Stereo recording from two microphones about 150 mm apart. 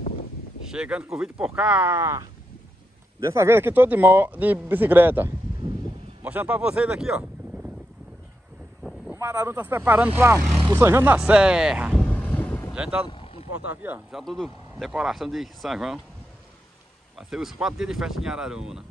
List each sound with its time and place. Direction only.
0.7 s speech: 5° right (ahead or behind)
9.1 s speech: 15° right (ahead or behind)
11.1 s speech: 5° right (ahead or behind)
12.0 s vehicle: 10° left (ahead or behind)
12.7 s speech: 5° right (ahead or behind)
13.2 s vehicle: 40° left (ahead or behind)
13.7 s speech: 15° right (ahead or behind)
14.1 s speech: centre (ahead or behind)
17.2 s speech: 5° right (ahead or behind)